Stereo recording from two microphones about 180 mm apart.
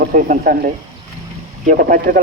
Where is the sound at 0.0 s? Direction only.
50° right (ahead or behind).